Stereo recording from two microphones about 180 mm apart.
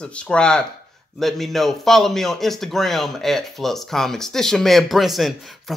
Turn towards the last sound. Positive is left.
turn(degrees=0)  # may be behind; listen again after turning